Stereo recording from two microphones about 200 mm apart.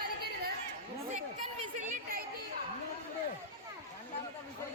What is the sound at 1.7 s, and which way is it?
Chatter, 35° right (ahead or behind).